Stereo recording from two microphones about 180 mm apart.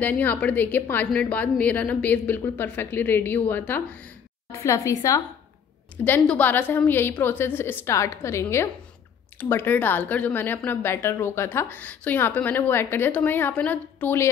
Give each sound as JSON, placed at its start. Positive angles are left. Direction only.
{"t": 0.0, "sound": "speech", "side_deg": 10}